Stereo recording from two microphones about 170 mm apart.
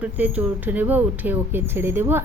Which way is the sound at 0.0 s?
10° right (ahead or behind).